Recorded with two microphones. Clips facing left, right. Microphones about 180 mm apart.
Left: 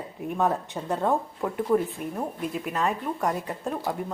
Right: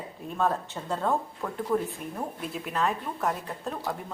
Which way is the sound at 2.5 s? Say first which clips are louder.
Right 1 dB; 5° left (ahead or behind).